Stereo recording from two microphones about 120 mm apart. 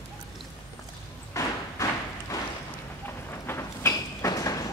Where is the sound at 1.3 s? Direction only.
25° left (ahead or behind).